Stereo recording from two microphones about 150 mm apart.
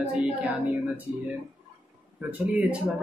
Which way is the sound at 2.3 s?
10° right (ahead or behind).